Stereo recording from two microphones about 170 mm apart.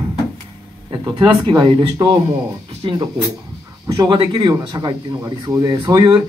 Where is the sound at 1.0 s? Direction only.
30° right (ahead or behind).